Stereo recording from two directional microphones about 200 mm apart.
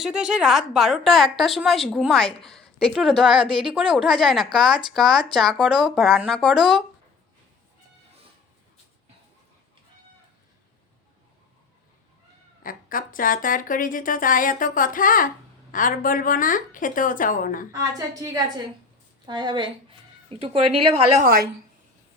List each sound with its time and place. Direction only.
0.0 s a woman's voice: 5° right (ahead or behind)
3.3 s a woman's voice: 25° right (ahead or behind)
3.6 s a woman's voice: 5° right (ahead or behind)
12.6 s speech: 45° left (ahead or behind)
17.7 s a woman's voice: 15° right (ahead or behind)